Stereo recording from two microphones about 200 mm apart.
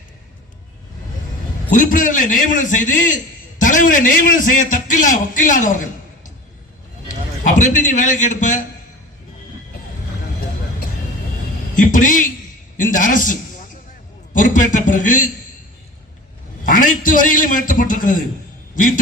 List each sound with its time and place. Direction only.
1.7 s a man's voice: 40° left (ahead or behind)
7.4 s a man's voice: 40° left (ahead or behind)
11.7 s a man's voice: 40° left (ahead or behind)
16.6 s a man's voice: 40° left (ahead or behind)